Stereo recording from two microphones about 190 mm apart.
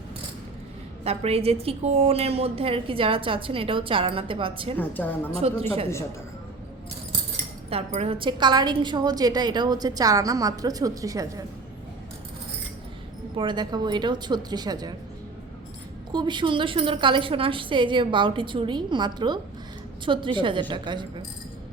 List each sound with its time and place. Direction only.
1.0 s a woman's voice: 30° right (ahead or behind)
4.8 s a woman's voice: 10° left (ahead or behind)
5.3 s a woman's voice: 30° right (ahead or behind)
7.9 s a woman's voice: 30° right (ahead or behind)
13.3 s a woman's voice: 25° right (ahead or behind)
16.1 s a woman's voice: 25° right (ahead or behind)